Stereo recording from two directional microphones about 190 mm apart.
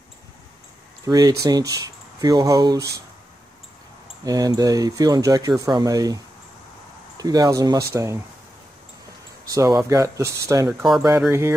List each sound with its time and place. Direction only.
1.0 s speech: 20° right (ahead or behind)
4.2 s speech: 20° right (ahead or behind)
9.5 s speech: 20° right (ahead or behind)